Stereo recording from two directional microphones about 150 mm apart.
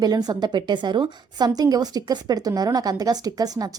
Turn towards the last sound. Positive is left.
turn(degrees=-25)  # may be behind; listen again after turning